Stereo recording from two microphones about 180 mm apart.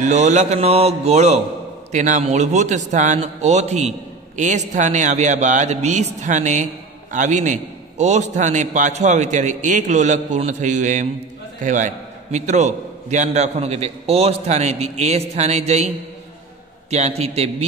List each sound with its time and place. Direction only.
0.0 s a man's voice: 40° right (ahead or behind)
16.9 s a man's voice: 35° right (ahead or behind)